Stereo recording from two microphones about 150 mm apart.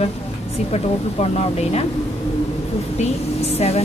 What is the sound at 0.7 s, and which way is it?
A woman's voice, 45° left (ahead or behind).